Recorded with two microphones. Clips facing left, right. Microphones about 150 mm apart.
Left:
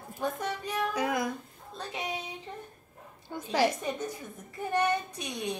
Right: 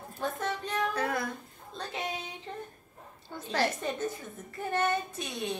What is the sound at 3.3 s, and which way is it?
A woman's voice, 10° left (ahead or behind).